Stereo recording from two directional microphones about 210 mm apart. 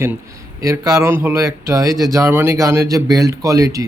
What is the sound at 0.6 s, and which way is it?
Speech, 15° right (ahead or behind).